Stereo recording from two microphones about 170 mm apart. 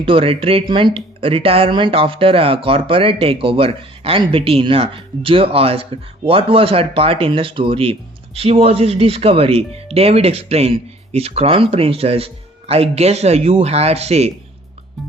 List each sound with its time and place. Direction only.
0.0 s speech: 30° right (ahead or behind)